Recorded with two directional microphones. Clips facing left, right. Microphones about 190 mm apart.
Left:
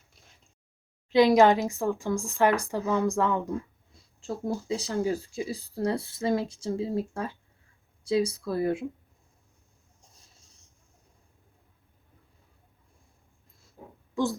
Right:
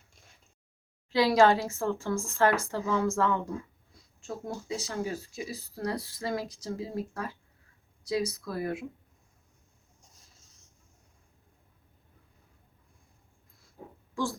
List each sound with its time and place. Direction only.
1.1 s speech: 20° left (ahead or behind)
4.2 s speech: 30° left (ahead or behind)
14.2 s speech: 20° left (ahead or behind)